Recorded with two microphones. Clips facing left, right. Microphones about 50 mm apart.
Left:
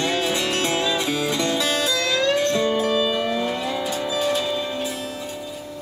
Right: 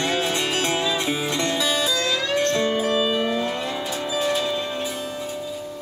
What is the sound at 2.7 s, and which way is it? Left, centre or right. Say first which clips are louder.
Music: left 1 dB; centre.